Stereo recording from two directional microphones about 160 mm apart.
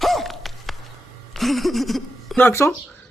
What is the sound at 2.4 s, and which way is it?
Speech, 15° left (ahead or behind).